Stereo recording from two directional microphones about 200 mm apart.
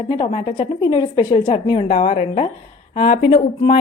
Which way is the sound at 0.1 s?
25° left (ahead or behind).